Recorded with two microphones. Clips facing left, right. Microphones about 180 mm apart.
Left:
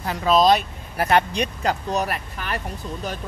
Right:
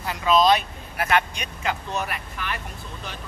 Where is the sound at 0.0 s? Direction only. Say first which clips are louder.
Left 2 dB; 40° left (ahead or behind).